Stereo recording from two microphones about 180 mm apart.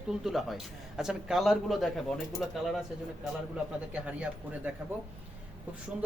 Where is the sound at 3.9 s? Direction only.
5° right (ahead or behind).